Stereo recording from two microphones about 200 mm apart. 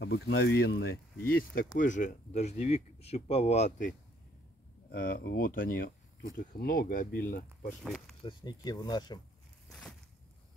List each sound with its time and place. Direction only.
0.0 s speech: 55° left (ahead or behind); by 3.9 s 35° left (ahead or behind)
4.9 s speech: 45° left (ahead or behind)
7.8 s speech: centre (ahead or behind)
8.2 s speech: 25° left (ahead or behind)
9.7 s a sound: centre (ahead or behind)